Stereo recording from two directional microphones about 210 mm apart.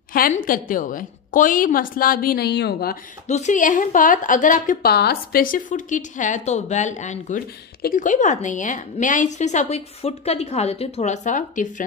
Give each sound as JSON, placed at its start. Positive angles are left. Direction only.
{"t": 0.1, "sound": "a woman's voice", "side_deg": 40}
{"t": 3.3, "sound": "a woman's voice", "side_deg": 35}